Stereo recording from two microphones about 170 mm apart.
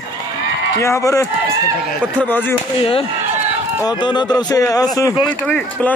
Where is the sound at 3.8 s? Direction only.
25° left (ahead or behind).